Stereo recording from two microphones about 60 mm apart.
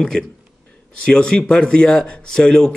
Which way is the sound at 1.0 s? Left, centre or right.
Centre.